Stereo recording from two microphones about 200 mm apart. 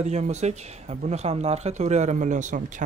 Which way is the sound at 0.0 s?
35° right (ahead or behind).